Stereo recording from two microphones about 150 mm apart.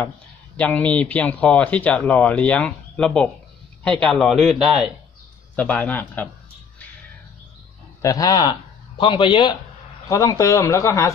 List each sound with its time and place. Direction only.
0.6 s speech: 10° left (ahead or behind)
5.6 s speech: 10° left (ahead or behind)
8.0 s speech: 25° left (ahead or behind)
10.0 s speech: 20° left (ahead or behind)